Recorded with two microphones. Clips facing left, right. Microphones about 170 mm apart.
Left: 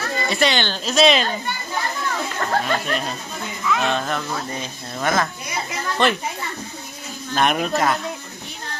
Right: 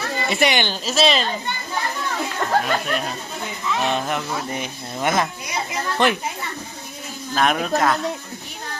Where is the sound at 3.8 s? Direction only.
15° right (ahead or behind).